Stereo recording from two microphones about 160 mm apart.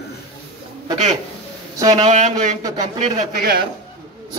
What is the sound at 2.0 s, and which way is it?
Speech, 45° right (ahead or behind).